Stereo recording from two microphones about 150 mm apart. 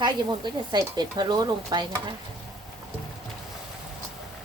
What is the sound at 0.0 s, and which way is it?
Speech, 30° right (ahead or behind).